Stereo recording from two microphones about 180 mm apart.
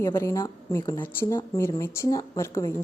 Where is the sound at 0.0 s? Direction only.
15° left (ahead or behind).